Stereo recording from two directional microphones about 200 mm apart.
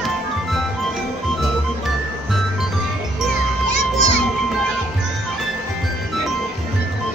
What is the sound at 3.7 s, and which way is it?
Children playing, 35° left (ahead or behind).